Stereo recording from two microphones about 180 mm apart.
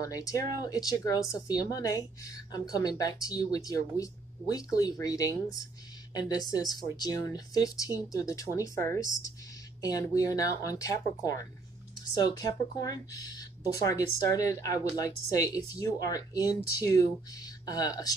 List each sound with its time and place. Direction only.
0.0 s a woman's voice: 20° left (ahead or behind)
9.8 s a woman's voice: 20° left (ahead or behind)